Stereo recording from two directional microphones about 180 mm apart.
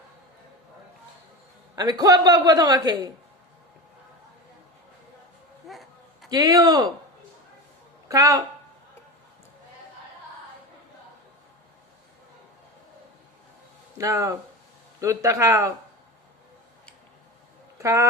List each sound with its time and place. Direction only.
1.7 s a man's voice: 20° right (ahead or behind)
5.6 s a sound: centre (ahead or behind)
6.3 s a man's voice: 20° right (ahead or behind)
8.0 s a woman's voice: 20° right (ahead or behind)
14.0 s a man's voice: 20° right (ahead or behind)
17.7 s a man's voice: 15° right (ahead or behind)